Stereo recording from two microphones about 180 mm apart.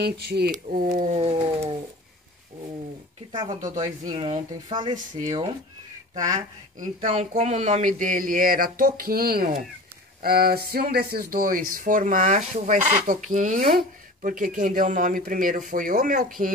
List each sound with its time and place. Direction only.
0.0 s speech: 60° right (ahead or behind)
0.5 s speech: 45° right (ahead or behind)
0.9 s a sound: 40° right (ahead or behind)
3.3 s speech: 25° right (ahead or behind)
4.9 s speech: 45° right (ahead or behind)
6.3 s speech: 45° right (ahead or behind)
13.7 s speech: 55° right (ahead or behind)